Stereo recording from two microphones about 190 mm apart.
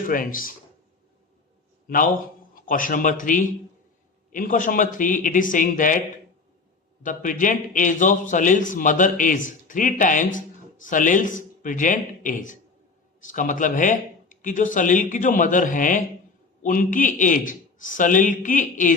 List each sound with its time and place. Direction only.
0.0 s a man's voice: 45° left (ahead or behind)
1.9 s a man's voice: 50° left (ahead or behind)
7.0 s a man's voice: 45° left (ahead or behind)